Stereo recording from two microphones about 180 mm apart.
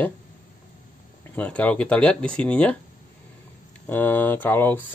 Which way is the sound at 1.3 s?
5° left (ahead or behind).